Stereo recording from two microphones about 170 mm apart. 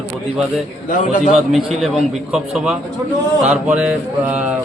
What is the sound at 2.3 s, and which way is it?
A man's voice, centre (ahead or behind).